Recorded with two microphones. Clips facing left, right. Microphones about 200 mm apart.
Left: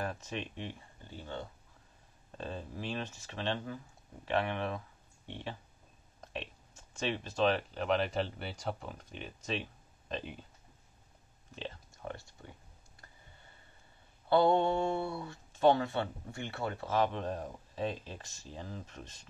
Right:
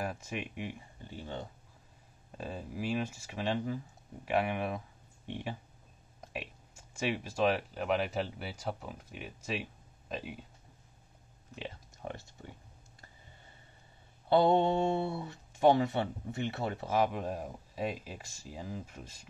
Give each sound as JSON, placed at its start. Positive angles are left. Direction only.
{"t": 0.0, "sound": "speech", "side_deg": -10}
{"t": 11.5, "sound": "speech", "side_deg": -15}
{"t": 14.3, "sound": "speech", "side_deg": -20}